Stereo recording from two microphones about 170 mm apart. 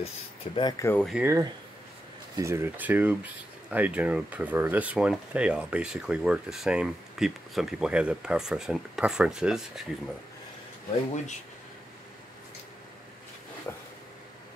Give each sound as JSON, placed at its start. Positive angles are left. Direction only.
{"t": 0.0, "sound": "speech", "side_deg": 30}
{"t": 1.1, "sound": "speech", "side_deg": -15}
{"t": 13.7, "sound": "a sound", "side_deg": 15}